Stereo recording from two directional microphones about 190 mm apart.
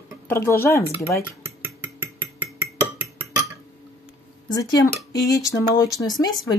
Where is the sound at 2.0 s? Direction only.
10° right (ahead or behind).